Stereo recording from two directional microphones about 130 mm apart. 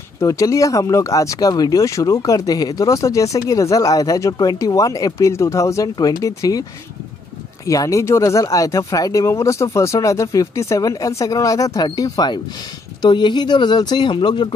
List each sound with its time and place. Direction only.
0.2 s speech: 25° left (ahead or behind)
7.6 s speech: 25° left (ahead or behind)